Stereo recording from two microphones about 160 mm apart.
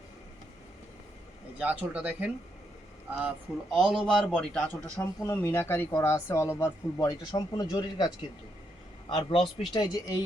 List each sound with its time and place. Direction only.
1.5 s a man's voice: 10° right (ahead or behind); by 10.2 s 25° left (ahead or behind)